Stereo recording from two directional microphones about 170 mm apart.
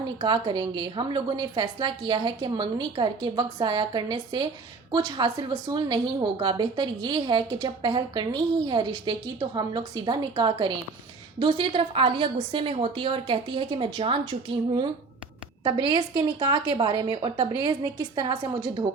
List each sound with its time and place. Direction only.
0.2 s a woman's voice: 30° right (ahead or behind)